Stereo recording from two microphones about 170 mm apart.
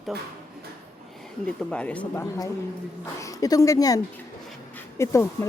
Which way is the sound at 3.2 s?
20° left (ahead or behind).